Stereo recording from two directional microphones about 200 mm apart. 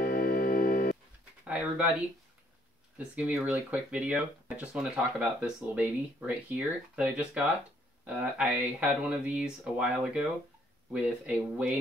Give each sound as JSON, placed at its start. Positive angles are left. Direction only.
{"t": 0.0, "sound": "organ", "side_deg": 45}
{"t": 1.4, "sound": "speech", "side_deg": -5}